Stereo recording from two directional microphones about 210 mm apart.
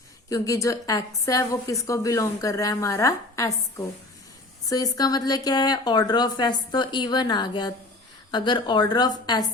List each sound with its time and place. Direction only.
0.3 s a woman's voice: 15° left (ahead or behind)